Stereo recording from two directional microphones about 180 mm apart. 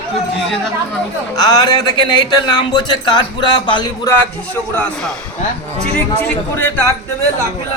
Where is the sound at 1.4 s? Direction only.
20° left (ahead or behind).